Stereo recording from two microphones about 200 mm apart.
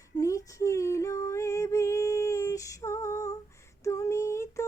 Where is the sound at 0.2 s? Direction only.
15° left (ahead or behind).